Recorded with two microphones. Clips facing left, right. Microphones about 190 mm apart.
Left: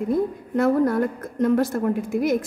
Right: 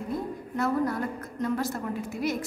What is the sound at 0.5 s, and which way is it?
A woman's voice, 55° left (ahead or behind).